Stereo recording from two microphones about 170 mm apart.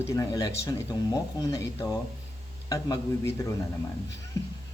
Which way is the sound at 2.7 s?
20° left (ahead or behind).